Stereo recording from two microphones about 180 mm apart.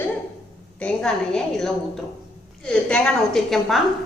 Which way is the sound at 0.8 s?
5° left (ahead or behind).